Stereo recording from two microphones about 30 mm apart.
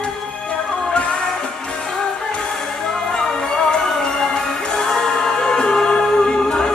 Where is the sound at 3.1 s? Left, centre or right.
Left.